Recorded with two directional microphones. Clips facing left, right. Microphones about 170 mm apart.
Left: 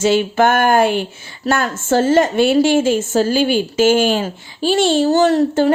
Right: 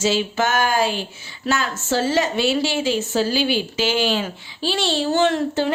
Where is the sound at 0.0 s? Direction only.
55° left (ahead or behind).